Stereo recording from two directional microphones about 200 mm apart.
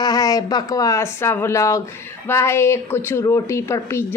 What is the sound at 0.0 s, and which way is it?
Speech, 20° left (ahead or behind).